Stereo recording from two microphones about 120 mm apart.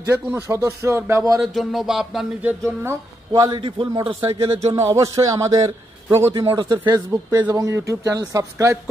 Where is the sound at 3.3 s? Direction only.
35° right (ahead or behind).